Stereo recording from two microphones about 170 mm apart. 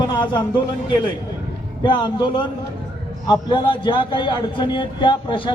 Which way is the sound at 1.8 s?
25° left (ahead or behind).